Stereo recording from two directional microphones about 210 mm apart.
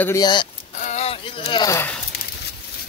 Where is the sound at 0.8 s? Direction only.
30° left (ahead or behind); by 2.0 s 10° left (ahead or behind).